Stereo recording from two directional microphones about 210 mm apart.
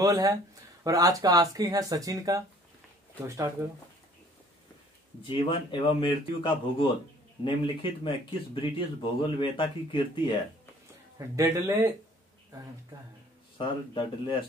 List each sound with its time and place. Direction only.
0.0 s speech: 15° right (ahead or behind)
5.2 s speech: 25° left (ahead or behind)
11.1 s speech: 15° right (ahead or behind)
13.6 s speech: 25° left (ahead or behind)